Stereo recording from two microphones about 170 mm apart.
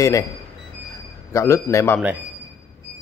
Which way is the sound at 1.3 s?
15° left (ahead or behind).